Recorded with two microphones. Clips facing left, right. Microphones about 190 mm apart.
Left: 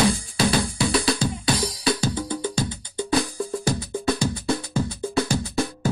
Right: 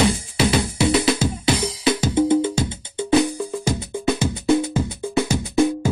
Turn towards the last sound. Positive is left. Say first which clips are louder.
# right 5 dB
turn(degrees=-20)  # may be behind; listen again after turning